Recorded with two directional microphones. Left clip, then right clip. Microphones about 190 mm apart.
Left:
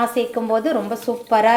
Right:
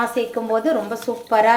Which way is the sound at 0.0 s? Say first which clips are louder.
Left 1 dB; 10° left (ahead or behind).